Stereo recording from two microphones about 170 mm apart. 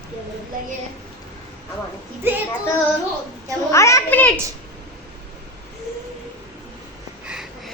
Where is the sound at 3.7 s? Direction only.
15° left (ahead or behind).